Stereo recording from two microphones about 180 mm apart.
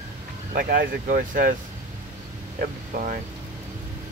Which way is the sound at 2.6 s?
45° right (ahead or behind).